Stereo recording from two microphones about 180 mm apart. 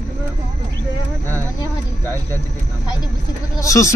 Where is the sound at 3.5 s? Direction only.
15° left (ahead or behind).